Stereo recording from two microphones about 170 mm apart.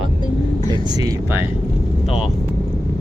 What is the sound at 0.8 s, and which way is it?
Speech, 25° right (ahead or behind).